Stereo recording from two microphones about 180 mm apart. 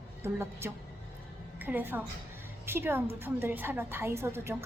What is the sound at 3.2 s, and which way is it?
Speech, 10° right (ahead or behind).